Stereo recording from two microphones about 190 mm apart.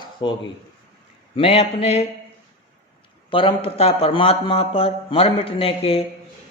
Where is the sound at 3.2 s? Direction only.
25° left (ahead or behind).